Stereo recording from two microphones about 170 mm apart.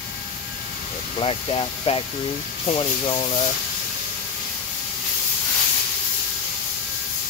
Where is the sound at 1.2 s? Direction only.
30° left (ahead or behind).